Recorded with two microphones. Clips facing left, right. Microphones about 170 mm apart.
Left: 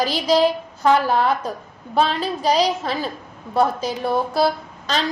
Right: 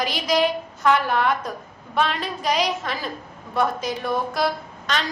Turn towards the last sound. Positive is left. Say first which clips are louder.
# left 3 dB
turn(degrees=30)  # may be behind; listen again after turning